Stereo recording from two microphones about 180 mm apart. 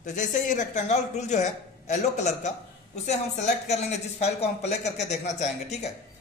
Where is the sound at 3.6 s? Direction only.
40° left (ahead or behind).